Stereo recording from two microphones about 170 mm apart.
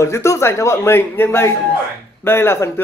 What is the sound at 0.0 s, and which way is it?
Speech, 15° left (ahead or behind).